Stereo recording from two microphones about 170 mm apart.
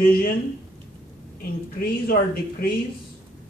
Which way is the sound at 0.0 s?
60° left (ahead or behind).